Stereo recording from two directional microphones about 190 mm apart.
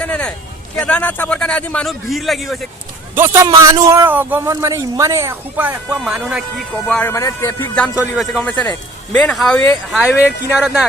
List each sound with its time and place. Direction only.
0.0 s a sound: 5° left (ahead or behind)
0.8 s a man's voice: 5° left (ahead or behind)
3.2 s speech: 15° right (ahead or behind); by 7.1 s 5° left (ahead or behind)
7.1 s music: 15° left (ahead or behind)
7.9 s a man's voice: 5° right (ahead or behind)